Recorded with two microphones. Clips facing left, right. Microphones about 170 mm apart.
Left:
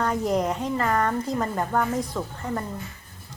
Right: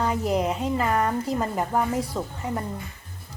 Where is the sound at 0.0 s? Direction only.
5° right (ahead or behind).